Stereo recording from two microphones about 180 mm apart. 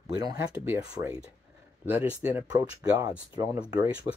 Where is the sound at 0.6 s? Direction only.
15° right (ahead or behind).